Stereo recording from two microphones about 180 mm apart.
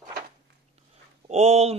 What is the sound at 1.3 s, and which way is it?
Speech, 35° right (ahead or behind).